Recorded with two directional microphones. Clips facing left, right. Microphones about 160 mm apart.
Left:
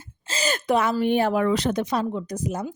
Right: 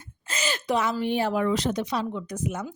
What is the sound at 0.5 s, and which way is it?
Speech, 55° left (ahead or behind).